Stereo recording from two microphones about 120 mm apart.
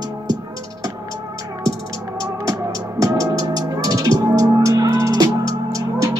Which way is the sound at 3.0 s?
30° right (ahead or behind).